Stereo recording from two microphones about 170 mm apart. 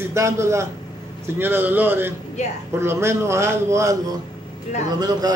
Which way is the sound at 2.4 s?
40° left (ahead or behind).